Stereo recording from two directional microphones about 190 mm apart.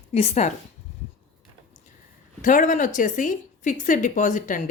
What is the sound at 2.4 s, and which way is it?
A woman's voice, 45° left (ahead or behind).